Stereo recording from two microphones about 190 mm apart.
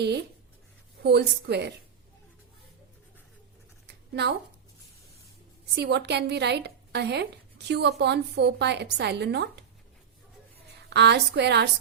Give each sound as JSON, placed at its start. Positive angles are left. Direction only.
{"t": 0.0, "sound": "a woman's voice", "side_deg": -60}
{"t": 3.8, "sound": "a sound", "side_deg": -60}
{"t": 5.7, "sound": "a woman's voice", "side_deg": -60}
{"t": 10.8, "sound": "a woman's voice", "side_deg": -60}